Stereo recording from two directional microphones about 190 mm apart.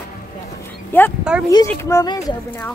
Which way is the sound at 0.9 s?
10° left (ahead or behind).